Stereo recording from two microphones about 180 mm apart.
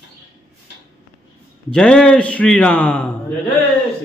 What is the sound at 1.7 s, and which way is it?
A man's voice, 5° left (ahead or behind).